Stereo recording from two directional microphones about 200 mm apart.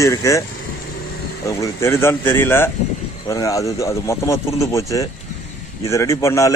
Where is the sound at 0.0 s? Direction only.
15° left (ahead or behind).